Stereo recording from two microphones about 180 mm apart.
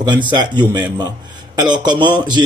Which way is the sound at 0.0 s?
25° right (ahead or behind).